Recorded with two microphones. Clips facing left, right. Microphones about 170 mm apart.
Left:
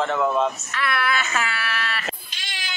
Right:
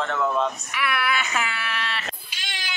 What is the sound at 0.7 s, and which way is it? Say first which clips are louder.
Wail: right 1 dB; 10° right (ahead or behind).